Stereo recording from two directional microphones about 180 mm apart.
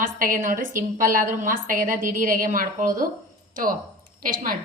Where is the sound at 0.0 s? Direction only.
45° right (ahead or behind).